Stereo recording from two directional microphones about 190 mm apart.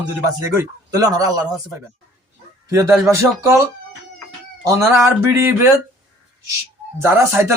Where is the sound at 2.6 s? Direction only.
15° right (ahead or behind).